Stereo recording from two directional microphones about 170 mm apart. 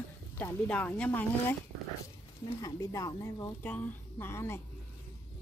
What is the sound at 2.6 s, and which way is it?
Speech, 20° left (ahead or behind).